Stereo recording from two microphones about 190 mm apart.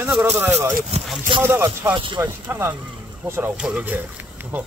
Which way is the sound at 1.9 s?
25° right (ahead or behind).